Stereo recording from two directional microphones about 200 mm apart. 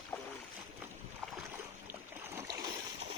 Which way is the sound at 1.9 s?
10° right (ahead or behind).